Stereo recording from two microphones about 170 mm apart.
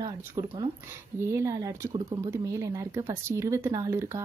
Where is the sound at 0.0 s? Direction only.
20° right (ahead or behind).